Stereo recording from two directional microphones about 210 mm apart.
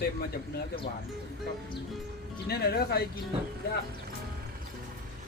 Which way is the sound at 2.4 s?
50° left (ahead or behind).